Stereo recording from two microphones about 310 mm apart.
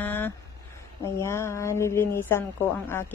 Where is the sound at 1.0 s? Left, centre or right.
Centre.